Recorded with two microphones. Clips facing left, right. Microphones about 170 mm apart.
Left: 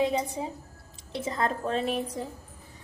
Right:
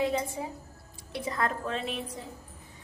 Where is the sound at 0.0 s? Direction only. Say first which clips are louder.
Left 2 dB; 20° left (ahead or behind); by 2.0 s 40° left (ahead or behind).